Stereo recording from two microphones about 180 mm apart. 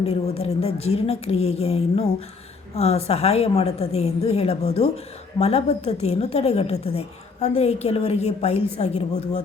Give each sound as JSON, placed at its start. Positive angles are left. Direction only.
{"t": 0.0, "sound": "a woman's voice", "side_deg": 35}